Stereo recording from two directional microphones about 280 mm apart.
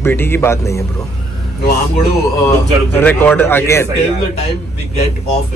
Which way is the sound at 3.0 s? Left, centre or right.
Centre.